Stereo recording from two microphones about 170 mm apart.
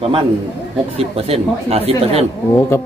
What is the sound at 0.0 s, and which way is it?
Speech, 35° right (ahead or behind).